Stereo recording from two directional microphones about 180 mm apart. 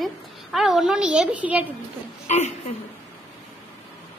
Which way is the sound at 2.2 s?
40° left (ahead or behind).